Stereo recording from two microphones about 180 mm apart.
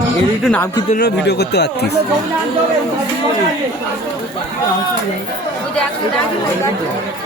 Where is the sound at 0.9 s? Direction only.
60° left (ahead or behind).